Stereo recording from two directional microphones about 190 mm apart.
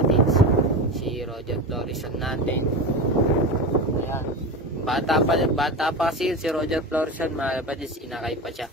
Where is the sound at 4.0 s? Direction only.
10° left (ahead or behind).